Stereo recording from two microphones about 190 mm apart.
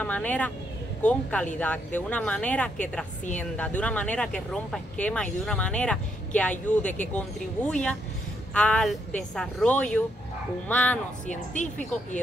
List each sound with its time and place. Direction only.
0.0 s a woman's voice: 10° left (ahead or behind)
11.2 s speech: 40° left (ahead or behind)